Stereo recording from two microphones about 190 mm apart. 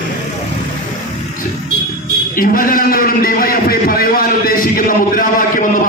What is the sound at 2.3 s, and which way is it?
A man's voice, 50° left (ahead or behind).